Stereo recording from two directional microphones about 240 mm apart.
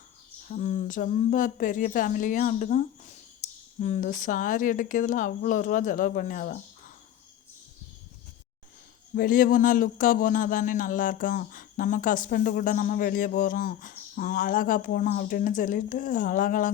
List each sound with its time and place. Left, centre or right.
0.4 s speech: left
9.1 s speech: left